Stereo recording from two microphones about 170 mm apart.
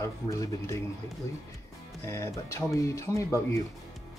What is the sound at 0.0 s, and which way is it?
Speech, 20° left (ahead or behind).